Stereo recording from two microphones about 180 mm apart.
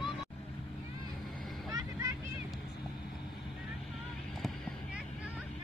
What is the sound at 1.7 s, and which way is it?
Vehicle, 15° right (ahead or behind).